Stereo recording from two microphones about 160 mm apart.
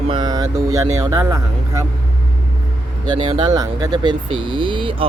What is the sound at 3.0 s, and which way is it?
Speech, 30° right (ahead or behind).